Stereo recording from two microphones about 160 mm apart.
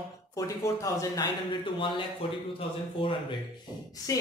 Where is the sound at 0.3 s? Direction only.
20° left (ahead or behind).